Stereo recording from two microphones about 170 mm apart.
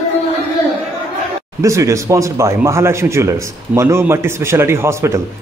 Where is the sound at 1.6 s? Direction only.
20° right (ahead or behind).